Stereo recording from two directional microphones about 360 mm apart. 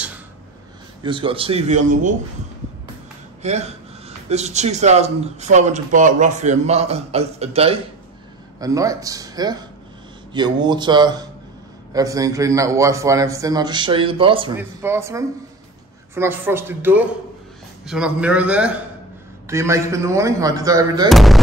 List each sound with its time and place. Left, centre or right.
1.0 s a man's voice: centre
3.4 s a man's voice: centre
21.1 s speech: centre